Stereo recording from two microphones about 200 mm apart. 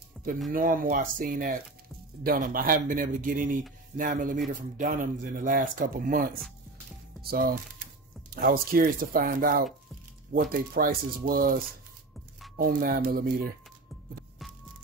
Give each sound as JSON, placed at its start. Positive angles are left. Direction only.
{"t": 0.2, "sound": "music", "side_deg": 0}
{"t": 0.5, "sound": "speech", "side_deg": -45}